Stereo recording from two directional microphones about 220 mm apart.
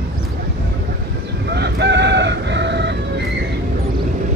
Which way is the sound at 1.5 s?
50° right (ahead or behind).